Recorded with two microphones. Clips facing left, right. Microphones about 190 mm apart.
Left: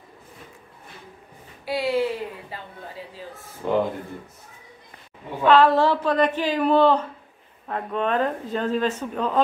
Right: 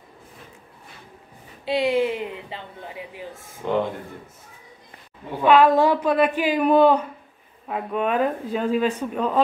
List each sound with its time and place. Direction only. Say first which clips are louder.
1.7 s speech: right 2 dB; 20° right (ahead or behind)
3.6 s speech: left 1 dB; 5° left (ahead or behind)
5.4 s speech: right 1 dB; 10° right (ahead or behind)